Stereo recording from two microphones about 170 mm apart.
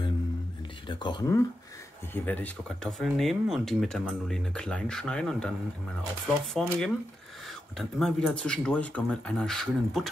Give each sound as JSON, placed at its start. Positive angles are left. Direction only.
{"t": 0.8, "sound": "speech", "side_deg": 25}
{"t": 2.1, "sound": "speech", "side_deg": 10}